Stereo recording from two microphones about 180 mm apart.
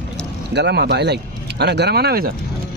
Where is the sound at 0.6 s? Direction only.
65° right (ahead or behind).